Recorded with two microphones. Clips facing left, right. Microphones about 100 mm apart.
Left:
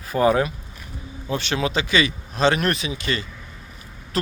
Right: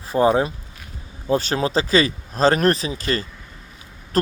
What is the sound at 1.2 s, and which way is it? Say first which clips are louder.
Speech: right 4 dB; 35° right (ahead or behind).